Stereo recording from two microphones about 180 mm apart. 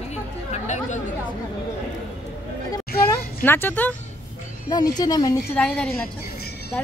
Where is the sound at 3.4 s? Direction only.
10° left (ahead or behind).